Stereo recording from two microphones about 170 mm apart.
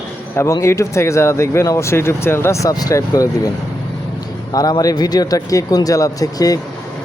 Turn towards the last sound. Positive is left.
turn(degrees=20)  # may be behind; listen again after turning